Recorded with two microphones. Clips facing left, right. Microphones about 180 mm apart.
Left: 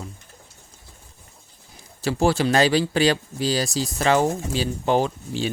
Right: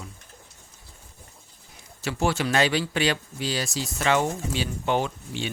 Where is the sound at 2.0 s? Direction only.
35° left (ahead or behind).